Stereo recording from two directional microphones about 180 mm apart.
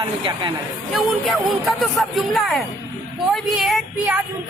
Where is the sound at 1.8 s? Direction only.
Centre (ahead or behind).